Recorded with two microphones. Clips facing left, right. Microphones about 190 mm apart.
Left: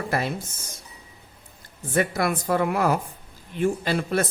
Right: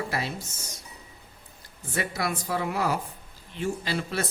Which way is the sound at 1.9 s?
50° left (ahead or behind).